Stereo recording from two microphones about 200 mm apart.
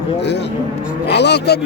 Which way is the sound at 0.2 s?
60° left (ahead or behind).